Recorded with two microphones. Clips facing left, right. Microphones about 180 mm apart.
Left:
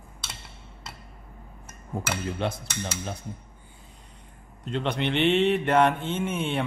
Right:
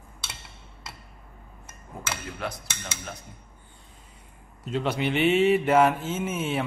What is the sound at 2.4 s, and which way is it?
Dishes, 25° left (ahead or behind).